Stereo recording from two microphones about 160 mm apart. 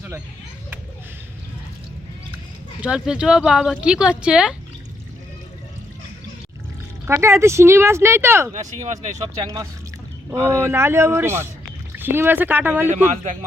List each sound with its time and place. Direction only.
2.8 s speech: 5° right (ahead or behind)
7.1 s speech: 15° right (ahead or behind)
8.5 s speech: 45° right (ahead or behind)
9.1 s speech: 20° right (ahead or behind)
12.9 s speech: 50° right (ahead or behind)